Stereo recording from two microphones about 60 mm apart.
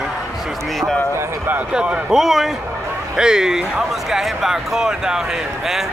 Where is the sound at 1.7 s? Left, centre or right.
Centre.